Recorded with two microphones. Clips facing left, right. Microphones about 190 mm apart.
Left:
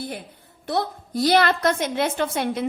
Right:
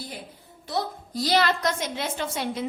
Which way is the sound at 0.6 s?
60° left (ahead or behind).